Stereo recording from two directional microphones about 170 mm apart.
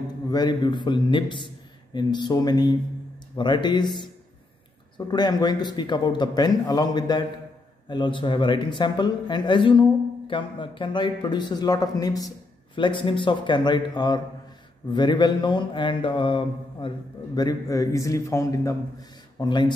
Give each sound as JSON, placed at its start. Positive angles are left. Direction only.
{"t": 0.3, "sound": "speech", "side_deg": 25}